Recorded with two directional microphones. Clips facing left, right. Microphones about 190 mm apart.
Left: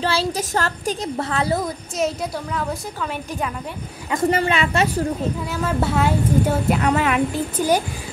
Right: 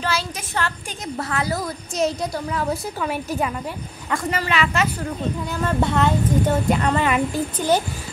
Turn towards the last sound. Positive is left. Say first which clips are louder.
# left 1 dB
turn(degrees=0)  # may be behind; listen again after turning